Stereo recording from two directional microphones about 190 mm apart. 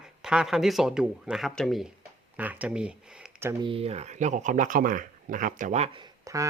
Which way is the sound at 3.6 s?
30° right (ahead or behind).